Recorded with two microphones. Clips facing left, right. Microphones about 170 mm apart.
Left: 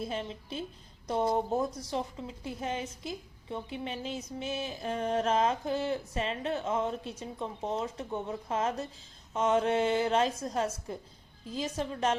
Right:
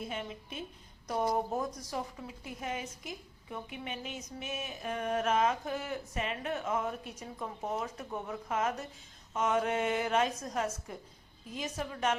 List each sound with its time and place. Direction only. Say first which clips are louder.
0.0 s a woman's voice: left 4 dB; 30° left (ahead or behind)